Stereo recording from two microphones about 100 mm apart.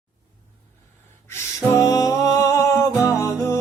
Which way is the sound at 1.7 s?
30° left (ahead or behind).